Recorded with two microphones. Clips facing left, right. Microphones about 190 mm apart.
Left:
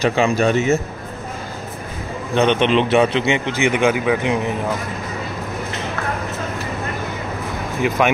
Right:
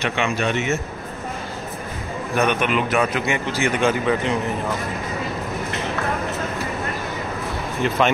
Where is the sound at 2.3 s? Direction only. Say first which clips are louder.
Left 5 dB; 25° left (ahead or behind).